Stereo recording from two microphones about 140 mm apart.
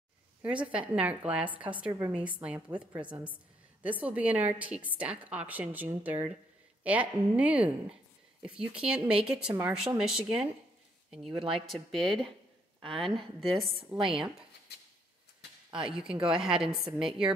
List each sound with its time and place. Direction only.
0.4 s a woman's voice: 10° right (ahead or behind)
13.6 s a woman's voice: centre (ahead or behind)
13.9 s speech: 40° right (ahead or behind)
15.7 s a woman's voice: 5° right (ahead or behind)